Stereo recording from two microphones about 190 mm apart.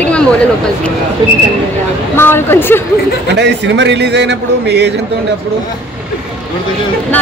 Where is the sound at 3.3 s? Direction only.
65° right (ahead or behind).